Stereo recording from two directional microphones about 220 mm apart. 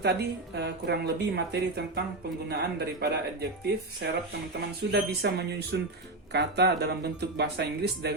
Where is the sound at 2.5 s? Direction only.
45° right (ahead or behind).